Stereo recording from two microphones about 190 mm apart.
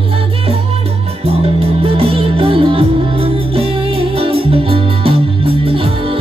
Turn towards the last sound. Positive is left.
turn(degrees=-30)  # may be behind; listen again after turning